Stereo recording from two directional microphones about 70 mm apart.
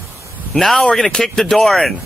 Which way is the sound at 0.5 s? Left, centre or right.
Centre.